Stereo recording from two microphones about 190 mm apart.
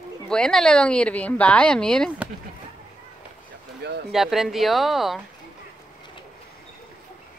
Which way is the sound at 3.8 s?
60° right (ahead or behind).